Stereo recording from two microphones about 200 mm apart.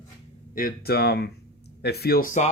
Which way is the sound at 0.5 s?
50° left (ahead or behind).